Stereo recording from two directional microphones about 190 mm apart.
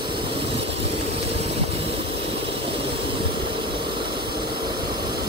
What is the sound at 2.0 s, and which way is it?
Vehicle, 60° right (ahead or behind).